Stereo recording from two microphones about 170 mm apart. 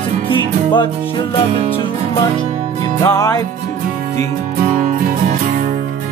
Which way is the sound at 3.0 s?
20° left (ahead or behind).